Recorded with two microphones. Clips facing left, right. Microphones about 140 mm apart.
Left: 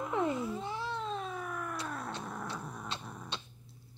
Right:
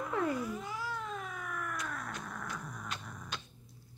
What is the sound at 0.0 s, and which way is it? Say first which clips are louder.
Cat: left 1 dB; 20° left (ahead or behind).